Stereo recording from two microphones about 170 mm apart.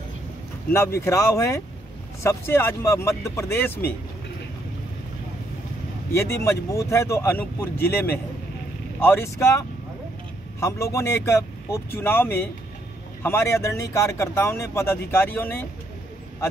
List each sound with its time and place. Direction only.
0.7 s speech: 15° left (ahead or behind)
6.1 s speech: 15° left (ahead or behind)